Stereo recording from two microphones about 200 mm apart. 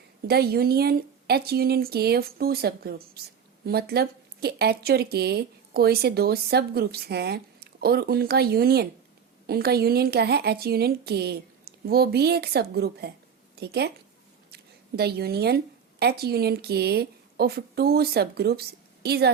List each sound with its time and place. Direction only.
0.3 s a woman's voice: 50° right (ahead or behind)